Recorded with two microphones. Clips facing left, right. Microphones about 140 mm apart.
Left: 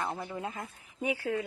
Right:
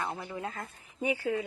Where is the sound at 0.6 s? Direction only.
Centre (ahead or behind).